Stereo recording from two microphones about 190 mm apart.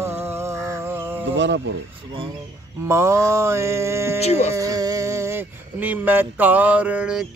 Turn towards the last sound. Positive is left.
turn(degrees=-5)  # may be behind; listen again after turning